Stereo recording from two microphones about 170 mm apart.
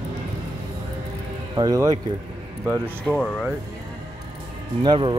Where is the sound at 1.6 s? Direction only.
20° right (ahead or behind).